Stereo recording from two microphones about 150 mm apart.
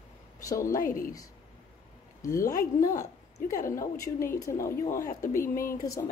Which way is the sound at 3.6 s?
20° left (ahead or behind).